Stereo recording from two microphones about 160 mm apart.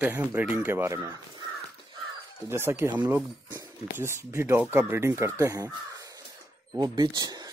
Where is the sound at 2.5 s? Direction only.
15° right (ahead or behind).